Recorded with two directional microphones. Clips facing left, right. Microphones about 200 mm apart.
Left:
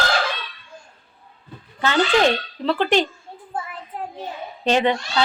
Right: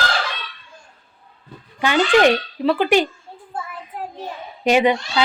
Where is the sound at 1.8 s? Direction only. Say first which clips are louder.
Right 3 dB; 15° right (ahead or behind).